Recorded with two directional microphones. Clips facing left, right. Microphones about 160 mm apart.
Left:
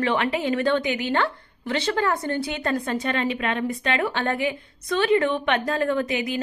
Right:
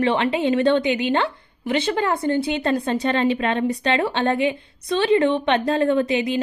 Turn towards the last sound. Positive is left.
turn(degrees=-25)  # may be behind; listen again after turning